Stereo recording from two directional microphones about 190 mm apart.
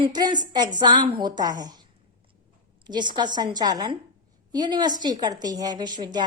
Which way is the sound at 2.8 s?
25° right (ahead or behind).